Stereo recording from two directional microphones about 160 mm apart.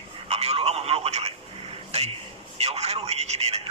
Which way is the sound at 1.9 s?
40° right (ahead or behind).